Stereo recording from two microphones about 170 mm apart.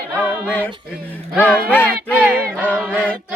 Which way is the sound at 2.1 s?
5° right (ahead or behind).